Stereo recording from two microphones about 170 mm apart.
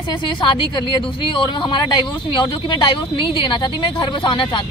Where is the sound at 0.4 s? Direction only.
25° left (ahead or behind).